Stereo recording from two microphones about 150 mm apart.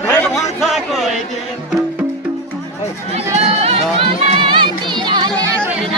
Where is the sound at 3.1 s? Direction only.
45° right (ahead or behind).